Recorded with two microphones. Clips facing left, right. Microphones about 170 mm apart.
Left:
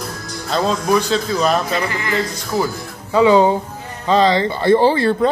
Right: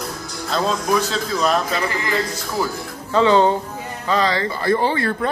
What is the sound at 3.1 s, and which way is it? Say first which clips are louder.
Speech: left 3 dB; 10° left (ahead or behind).